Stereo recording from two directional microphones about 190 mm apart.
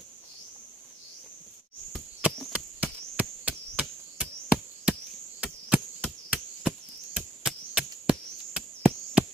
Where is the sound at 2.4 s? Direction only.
5° right (ahead or behind).